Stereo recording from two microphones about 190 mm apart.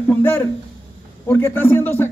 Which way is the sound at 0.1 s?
10° left (ahead or behind).